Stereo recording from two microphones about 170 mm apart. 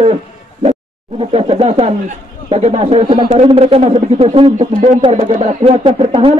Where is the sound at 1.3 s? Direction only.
35° right (ahead or behind).